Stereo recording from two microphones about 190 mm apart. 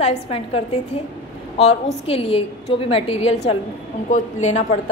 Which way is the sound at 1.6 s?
30° left (ahead or behind).